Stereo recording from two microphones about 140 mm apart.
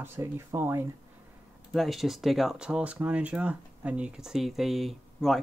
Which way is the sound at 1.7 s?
Centre (ahead or behind).